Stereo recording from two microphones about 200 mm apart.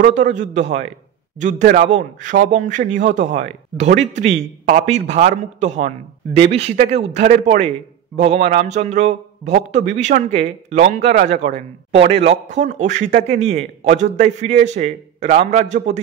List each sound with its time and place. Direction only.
0.1 s a man's voice: 40° right (ahead or behind)